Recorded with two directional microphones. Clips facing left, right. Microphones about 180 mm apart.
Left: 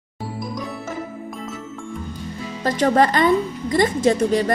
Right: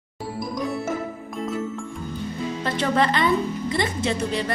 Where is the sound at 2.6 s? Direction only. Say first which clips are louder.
Left 6 dB; 45° left (ahead or behind).